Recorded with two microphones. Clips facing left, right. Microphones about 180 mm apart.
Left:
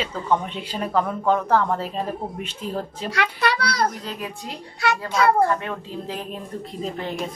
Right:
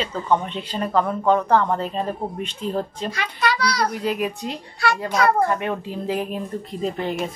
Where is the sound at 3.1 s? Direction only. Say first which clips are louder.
Left 2 dB; 65° left (ahead or behind).